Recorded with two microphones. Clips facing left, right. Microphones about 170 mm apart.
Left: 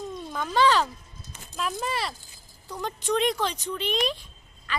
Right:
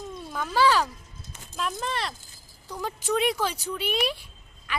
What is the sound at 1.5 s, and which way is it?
Speech, 5° left (ahead or behind).